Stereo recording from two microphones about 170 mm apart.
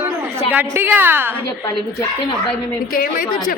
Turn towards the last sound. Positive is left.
turn(degrees=60)  # may be behind; listen again after turning